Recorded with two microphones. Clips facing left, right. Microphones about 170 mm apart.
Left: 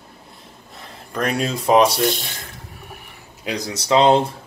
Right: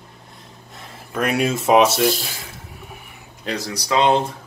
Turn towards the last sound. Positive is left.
turn(degrees=30)  # may be behind; listen again after turning